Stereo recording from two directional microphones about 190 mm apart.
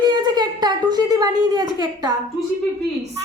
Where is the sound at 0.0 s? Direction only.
20° right (ahead or behind).